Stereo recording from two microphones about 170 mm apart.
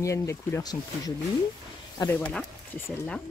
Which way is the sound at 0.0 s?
15° left (ahead or behind).